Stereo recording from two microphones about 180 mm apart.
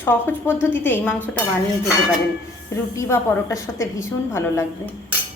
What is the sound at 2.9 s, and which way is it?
A woman's voice, 15° left (ahead or behind).